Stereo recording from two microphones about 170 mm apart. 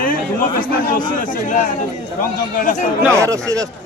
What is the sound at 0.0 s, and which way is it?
Speech, 55° left (ahead or behind).